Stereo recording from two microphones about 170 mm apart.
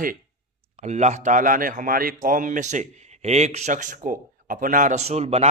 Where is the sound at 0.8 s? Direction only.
40° right (ahead or behind).